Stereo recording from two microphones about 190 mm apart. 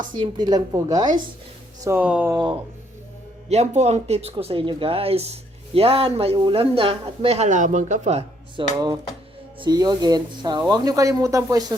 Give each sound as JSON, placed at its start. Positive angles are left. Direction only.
{"t": 0.1, "sound": "speech", "side_deg": -20}
{"t": 2.3, "sound": "speech", "side_deg": -25}
{"t": 3.5, "sound": "speech", "side_deg": -35}
{"t": 9.6, "sound": "speech", "side_deg": -20}